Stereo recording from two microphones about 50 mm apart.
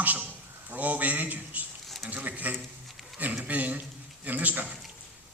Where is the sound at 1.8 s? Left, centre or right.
Centre.